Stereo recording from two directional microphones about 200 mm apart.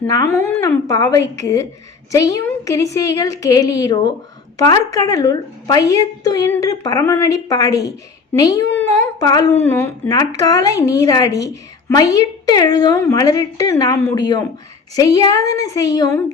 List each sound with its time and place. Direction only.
0.0 s a woman's voice: 15° left (ahead or behind)